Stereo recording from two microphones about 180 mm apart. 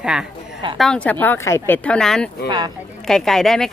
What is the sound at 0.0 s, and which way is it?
A woman's voice, 5° right (ahead or behind).